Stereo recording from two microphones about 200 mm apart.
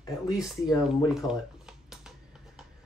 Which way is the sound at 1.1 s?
Centre (ahead or behind).